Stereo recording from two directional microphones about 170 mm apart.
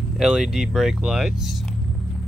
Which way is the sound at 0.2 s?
Centre (ahead or behind).